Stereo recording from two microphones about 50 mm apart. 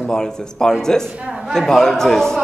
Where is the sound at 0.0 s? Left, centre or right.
Centre.